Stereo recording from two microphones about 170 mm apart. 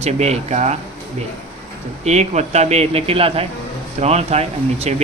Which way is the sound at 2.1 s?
40° right (ahead or behind).